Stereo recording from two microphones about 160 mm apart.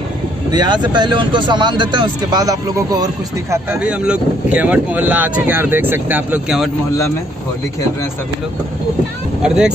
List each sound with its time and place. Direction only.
0.5 s speech: 25° right (ahead or behind)
3.8 s speech: 5° right (ahead or behind)